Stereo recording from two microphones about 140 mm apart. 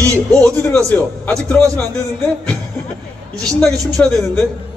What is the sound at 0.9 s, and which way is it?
Speech, 10° left (ahead or behind).